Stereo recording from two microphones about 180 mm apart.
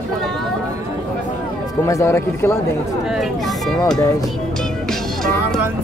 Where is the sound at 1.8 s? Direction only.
15° left (ahead or behind).